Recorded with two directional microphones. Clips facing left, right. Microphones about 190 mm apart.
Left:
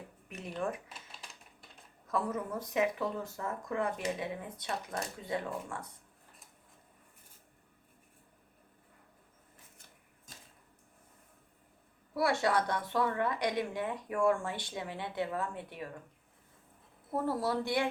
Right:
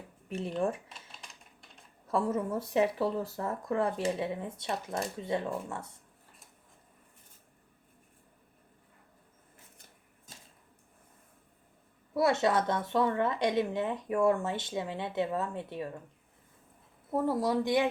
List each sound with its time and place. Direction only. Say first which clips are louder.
0.3 s speech: right 5 dB; 30° right (ahead or behind)
0.9 s typewriter: even; centre (ahead or behind)
2.0 s speech: right 4 dB; 30° right (ahead or behind)
12.1 s speech: right 3 dB; 20° right (ahead or behind)
17.1 s speech: right 4 dB; 15° right (ahead or behind)